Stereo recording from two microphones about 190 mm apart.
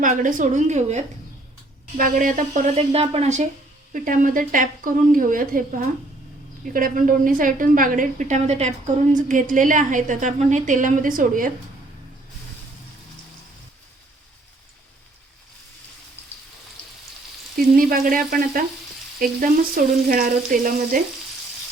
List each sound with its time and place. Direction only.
0.0 s a woman's voice: 45° right (ahead or behind)
17.6 s a woman's voice: 50° right (ahead or behind)